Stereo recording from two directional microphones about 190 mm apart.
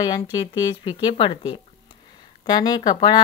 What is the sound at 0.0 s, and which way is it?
Speech, 20° left (ahead or behind).